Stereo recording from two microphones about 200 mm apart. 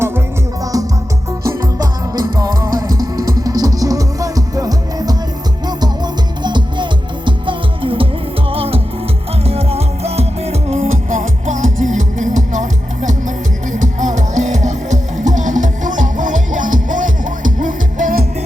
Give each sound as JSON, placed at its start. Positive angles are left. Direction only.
{"t": 0.6, "sound": "music", "side_deg": -15}